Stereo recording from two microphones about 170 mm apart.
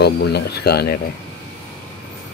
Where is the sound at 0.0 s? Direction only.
75° left (ahead or behind).